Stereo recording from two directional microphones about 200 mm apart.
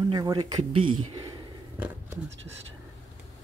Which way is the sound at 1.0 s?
20° right (ahead or behind).